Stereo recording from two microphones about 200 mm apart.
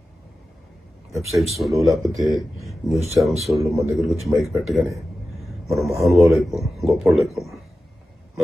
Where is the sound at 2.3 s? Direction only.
Centre (ahead or behind).